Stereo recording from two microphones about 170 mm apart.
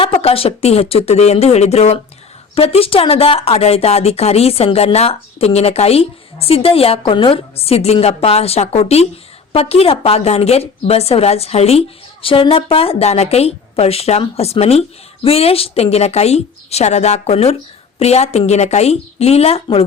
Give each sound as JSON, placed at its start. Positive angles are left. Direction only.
{"t": 0.0, "sound": "a woman's voice", "side_deg": 35}